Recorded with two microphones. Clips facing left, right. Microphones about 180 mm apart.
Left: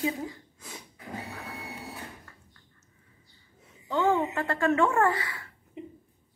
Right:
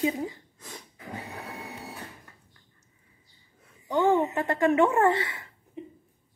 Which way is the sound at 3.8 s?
15° right (ahead or behind).